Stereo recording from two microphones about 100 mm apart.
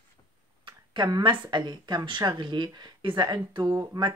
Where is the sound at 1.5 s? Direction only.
45° right (ahead or behind).